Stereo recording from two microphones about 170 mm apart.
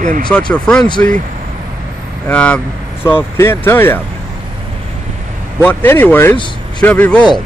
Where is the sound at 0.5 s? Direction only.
5° left (ahead or behind).